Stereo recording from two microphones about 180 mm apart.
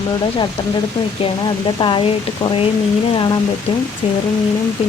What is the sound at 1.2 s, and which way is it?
Speech, 25° left (ahead or behind).